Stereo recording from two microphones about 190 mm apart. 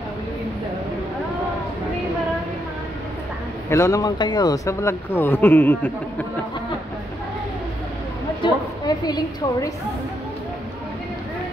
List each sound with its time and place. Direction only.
3.7 s speech: 15° left (ahead or behind)
8.4 s a woman's voice: 20° left (ahead or behind)